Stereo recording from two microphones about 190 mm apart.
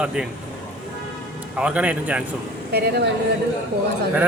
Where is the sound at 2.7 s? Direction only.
60° right (ahead or behind).